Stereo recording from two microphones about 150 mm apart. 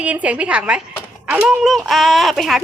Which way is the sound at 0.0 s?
10° right (ahead or behind).